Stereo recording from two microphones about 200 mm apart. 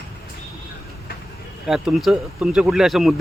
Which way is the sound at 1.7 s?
Centre (ahead or behind).